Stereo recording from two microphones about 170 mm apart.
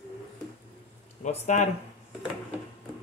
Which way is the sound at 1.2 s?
45° left (ahead or behind).